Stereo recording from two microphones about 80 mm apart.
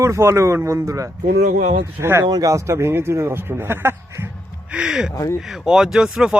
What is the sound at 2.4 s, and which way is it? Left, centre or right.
Speech, right.